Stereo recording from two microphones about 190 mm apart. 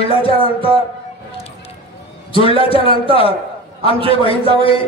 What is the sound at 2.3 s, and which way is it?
Speech, 30° left (ahead or behind).